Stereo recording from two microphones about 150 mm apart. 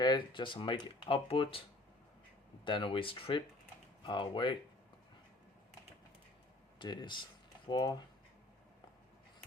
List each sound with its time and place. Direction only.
0.0 s speech: 30° left (ahead or behind)
2.6 s speech: 35° left (ahead or behind)
6.7 s speech: 30° left (ahead or behind)